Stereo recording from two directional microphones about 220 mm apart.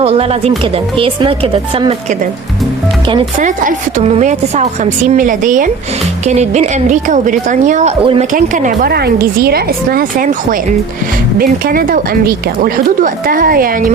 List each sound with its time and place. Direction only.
0.0 s speech: 25° right (ahead or behind)
3.3 s a woman's voice: 35° right (ahead or behind)